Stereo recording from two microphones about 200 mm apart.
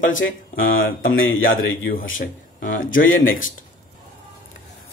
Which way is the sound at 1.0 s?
80° left.